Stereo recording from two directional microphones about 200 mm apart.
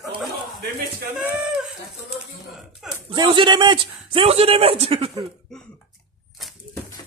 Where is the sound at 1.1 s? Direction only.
5° right (ahead or behind).